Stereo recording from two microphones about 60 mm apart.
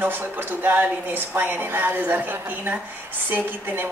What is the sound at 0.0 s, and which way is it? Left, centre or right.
Speech, right.